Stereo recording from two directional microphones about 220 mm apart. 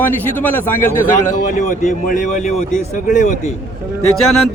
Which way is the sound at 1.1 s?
35° left (ahead or behind).